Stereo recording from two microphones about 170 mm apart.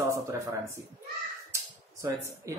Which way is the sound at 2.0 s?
15° right (ahead or behind).